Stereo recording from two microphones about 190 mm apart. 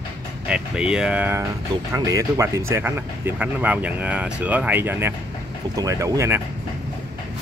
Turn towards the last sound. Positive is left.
turn(degrees=-15)  # may be behind; listen again after turning